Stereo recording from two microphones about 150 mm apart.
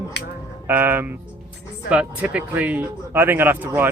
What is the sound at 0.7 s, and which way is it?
Speech, 10° right (ahead or behind).